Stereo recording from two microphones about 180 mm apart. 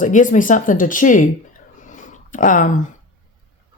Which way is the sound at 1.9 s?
45° left (ahead or behind).